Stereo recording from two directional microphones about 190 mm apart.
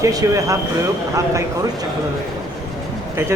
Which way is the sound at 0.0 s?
20° right (ahead or behind).